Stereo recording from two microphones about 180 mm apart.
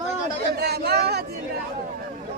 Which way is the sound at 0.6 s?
60° right (ahead or behind).